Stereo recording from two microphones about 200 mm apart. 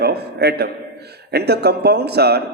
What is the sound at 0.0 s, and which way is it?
A man's voice, 55° right (ahead or behind).